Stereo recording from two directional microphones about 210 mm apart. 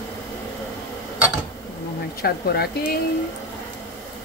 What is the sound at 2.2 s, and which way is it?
Speech, 50° left (ahead or behind).